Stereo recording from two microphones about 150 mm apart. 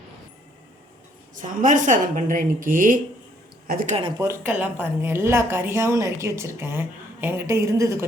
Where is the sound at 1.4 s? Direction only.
60° right (ahead or behind); by 3.9 s 75° right (ahead or behind).